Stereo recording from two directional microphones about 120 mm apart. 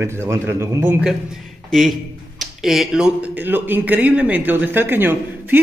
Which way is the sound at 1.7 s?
Centre (ahead or behind).